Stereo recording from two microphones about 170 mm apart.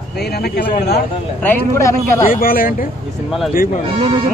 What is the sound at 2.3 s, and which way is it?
Speech, 60° left (ahead or behind).